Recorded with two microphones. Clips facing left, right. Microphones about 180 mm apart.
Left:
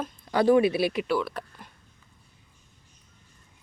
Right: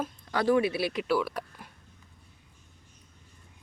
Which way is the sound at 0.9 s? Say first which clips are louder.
Left 1 dB; 5° right (ahead or behind).